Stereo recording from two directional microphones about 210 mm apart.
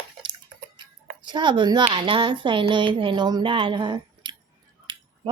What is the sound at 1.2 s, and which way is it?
A woman's voice, 20° right (ahead or behind).